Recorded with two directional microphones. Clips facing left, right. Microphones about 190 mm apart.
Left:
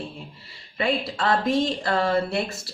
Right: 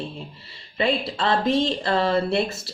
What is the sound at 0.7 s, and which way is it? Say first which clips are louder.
A woman's voice: right 2 dB; 25° right (ahead or behind).